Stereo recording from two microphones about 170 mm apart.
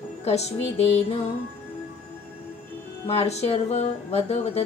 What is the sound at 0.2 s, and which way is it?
Speech, 40° left (ahead or behind).